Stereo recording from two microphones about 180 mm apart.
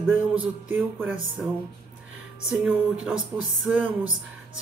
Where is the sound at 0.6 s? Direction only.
10° right (ahead or behind).